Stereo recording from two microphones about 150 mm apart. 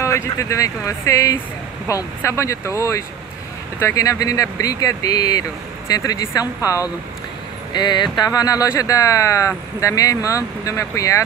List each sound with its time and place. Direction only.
0.0 s speech: 20° left (ahead or behind)